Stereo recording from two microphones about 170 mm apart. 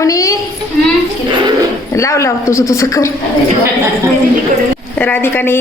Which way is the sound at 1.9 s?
15° left (ahead or behind).